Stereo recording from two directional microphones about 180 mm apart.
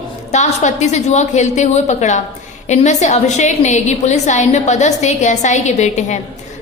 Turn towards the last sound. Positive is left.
turn(degrees=40)  # may be behind; listen again after turning